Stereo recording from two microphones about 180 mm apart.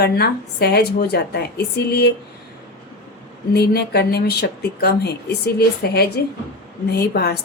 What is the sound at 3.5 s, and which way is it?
A woman's voice, 65° left (ahead or behind).